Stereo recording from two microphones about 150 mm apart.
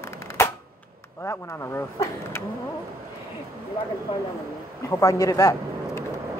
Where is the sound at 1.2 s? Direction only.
20° left (ahead or behind).